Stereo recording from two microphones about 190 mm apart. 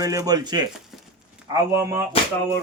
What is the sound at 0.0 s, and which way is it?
Speech, 20° right (ahead or behind).